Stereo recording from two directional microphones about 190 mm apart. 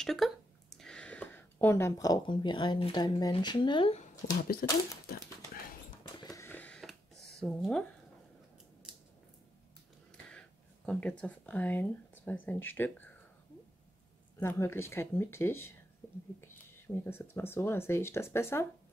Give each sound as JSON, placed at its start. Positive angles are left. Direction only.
{"t": 0.0, "sound": "speech", "side_deg": 0}
{"t": 4.6, "sound": "speech", "side_deg": 50}
{"t": 6.3, "sound": "a sound", "side_deg": 10}
{"t": 7.3, "sound": "speech", "side_deg": 0}
{"t": 10.9, "sound": "speech", "side_deg": 5}
{"t": 14.4, "sound": "speech", "side_deg": 15}